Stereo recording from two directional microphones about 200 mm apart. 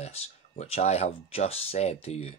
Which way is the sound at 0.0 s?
30° left (ahead or behind).